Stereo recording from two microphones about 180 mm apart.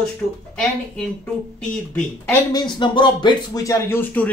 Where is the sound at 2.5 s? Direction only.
25° left (ahead or behind).